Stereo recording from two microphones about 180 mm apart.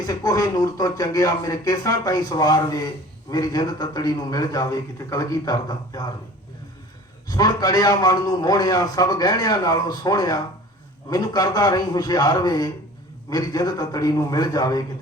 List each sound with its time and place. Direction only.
0.0 s speech: 20° left (ahead or behind)
7.3 s speech: 20° left (ahead or behind)